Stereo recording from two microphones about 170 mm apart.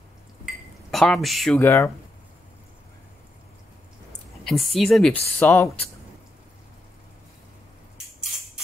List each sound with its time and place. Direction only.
0.9 s speech: centre (ahead or behind)
1.6 s speech: 15° left (ahead or behind)
4.5 s speech: centre (ahead or behind)